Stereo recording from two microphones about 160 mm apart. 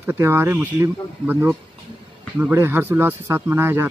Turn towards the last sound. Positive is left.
turn(degrees=-15)  # may be behind; listen again after turning